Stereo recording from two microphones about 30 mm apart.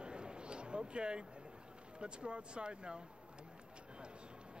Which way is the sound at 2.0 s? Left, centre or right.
Right.